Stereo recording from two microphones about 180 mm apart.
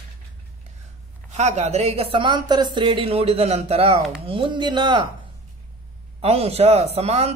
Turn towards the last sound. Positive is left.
turn(degrees=-35)  # may be behind; listen again after turning